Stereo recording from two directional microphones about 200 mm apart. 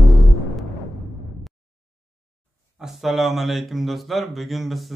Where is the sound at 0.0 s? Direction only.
Centre (ahead or behind).